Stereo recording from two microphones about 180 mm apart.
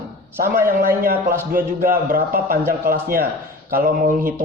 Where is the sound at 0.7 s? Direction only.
50° right (ahead or behind).